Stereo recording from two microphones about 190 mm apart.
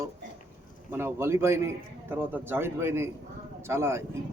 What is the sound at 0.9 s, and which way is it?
Speech, 15° right (ahead or behind).